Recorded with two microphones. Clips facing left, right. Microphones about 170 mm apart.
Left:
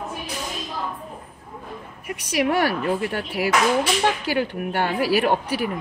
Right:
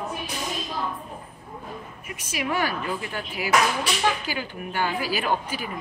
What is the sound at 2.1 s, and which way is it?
A woman's voice, 70° left (ahead or behind).